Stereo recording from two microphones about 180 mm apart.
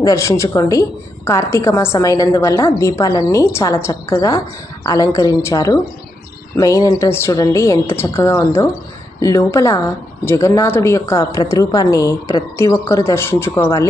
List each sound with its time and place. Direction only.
0.0 s a woman's voice: 15° left (ahead or behind)